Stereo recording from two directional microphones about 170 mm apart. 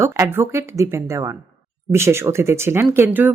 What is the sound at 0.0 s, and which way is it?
Speech, 15° right (ahead or behind).